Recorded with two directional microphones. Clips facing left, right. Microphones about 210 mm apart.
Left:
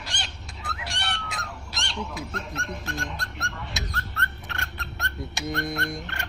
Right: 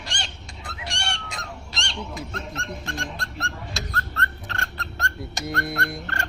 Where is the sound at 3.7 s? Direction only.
20° left (ahead or behind).